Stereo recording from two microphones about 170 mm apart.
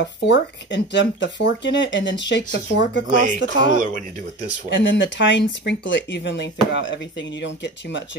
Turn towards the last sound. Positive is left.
turn(degrees=90)